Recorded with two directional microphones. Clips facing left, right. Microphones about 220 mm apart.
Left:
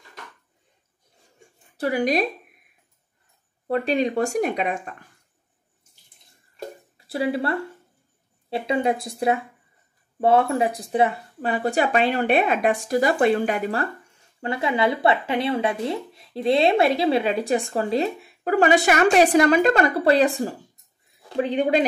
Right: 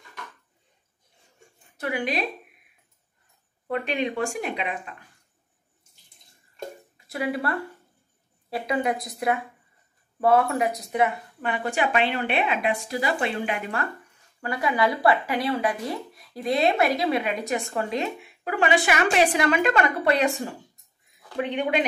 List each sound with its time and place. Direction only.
1.8 s speech: 40° left (ahead or behind)
3.6 s speech: 35° left (ahead or behind)
7.1 s speech: 30° left (ahead or behind)
14.4 s speech: 25° left (ahead or behind)